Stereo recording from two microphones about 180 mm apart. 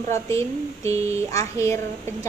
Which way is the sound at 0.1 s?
15° left (ahead or behind).